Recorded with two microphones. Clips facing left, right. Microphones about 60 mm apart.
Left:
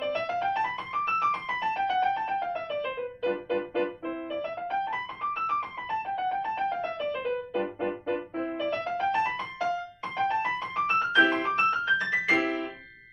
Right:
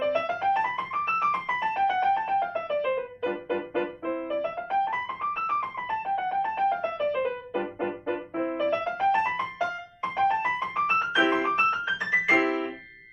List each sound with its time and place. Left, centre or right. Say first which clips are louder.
0.2 s music: right 2 dB; centre
10.4 s music: right 2 dB; centre
11.7 s keyboard: even; centre